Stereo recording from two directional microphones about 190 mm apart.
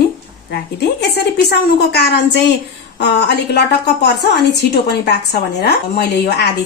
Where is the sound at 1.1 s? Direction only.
60° left (ahead or behind).